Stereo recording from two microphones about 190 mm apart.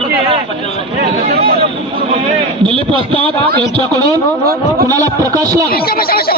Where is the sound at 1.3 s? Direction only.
55° right (ahead or behind).